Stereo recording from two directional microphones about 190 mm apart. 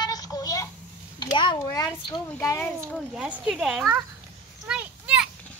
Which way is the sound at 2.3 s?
10° left (ahead or behind).